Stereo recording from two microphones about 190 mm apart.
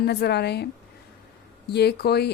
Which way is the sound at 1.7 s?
60° left (ahead or behind).